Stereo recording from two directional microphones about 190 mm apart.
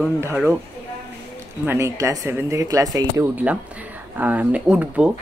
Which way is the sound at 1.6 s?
15° right (ahead or behind).